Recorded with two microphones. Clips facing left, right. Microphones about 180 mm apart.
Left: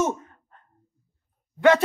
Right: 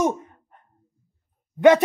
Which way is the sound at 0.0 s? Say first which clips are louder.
Right 2 dB; 15° right (ahead or behind).